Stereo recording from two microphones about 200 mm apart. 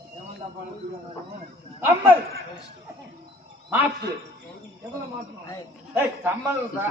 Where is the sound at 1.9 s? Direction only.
10° right (ahead or behind).